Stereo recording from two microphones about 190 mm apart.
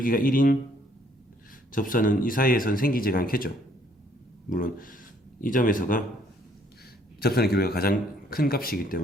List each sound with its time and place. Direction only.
0.0 s speech: 50° left (ahead or behind)
1.7 s speech: 45° left (ahead or behind)
7.2 s speech: 55° left (ahead or behind)